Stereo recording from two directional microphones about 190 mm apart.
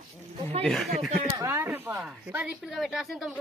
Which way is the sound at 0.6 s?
Centre (ahead or behind).